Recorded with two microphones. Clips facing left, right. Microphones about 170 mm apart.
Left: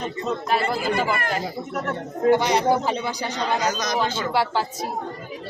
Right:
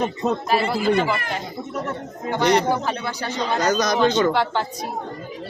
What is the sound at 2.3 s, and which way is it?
Speech, 10° left (ahead or behind).